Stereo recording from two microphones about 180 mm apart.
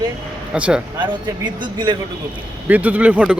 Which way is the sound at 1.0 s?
25° right (ahead or behind).